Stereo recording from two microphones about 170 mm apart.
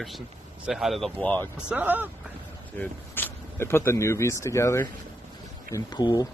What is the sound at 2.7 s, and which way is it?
A man's voice, 10° left (ahead or behind).